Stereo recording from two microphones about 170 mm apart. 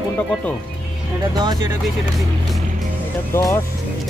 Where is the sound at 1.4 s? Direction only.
25° right (ahead or behind).